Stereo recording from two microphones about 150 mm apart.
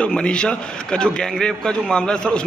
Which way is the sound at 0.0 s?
5° left (ahead or behind).